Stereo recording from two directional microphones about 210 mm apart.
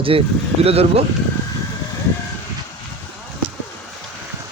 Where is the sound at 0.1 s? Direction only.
25° right (ahead or behind).